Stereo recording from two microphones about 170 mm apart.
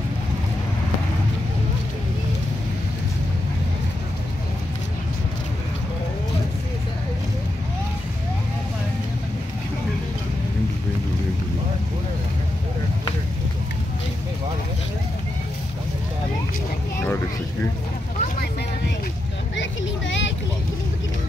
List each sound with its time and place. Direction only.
19.5 s vehicle: 90° left